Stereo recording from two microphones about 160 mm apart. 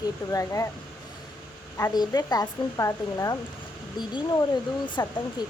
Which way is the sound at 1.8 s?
25° left (ahead or behind).